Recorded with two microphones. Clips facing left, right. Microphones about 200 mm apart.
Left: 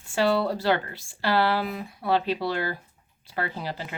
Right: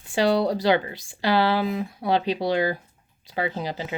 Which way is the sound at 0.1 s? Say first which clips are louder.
Right 2 dB; 15° right (ahead or behind).